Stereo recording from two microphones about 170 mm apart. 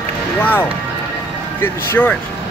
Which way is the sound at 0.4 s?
10° left (ahead or behind).